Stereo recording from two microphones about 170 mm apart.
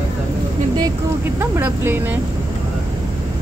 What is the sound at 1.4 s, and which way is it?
Vehicle, 15° right (ahead or behind).